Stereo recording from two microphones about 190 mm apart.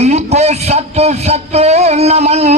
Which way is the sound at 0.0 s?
35° right (ahead or behind).